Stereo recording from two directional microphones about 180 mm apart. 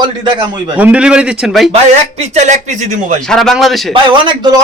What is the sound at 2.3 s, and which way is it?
Speech, 40° right (ahead or behind).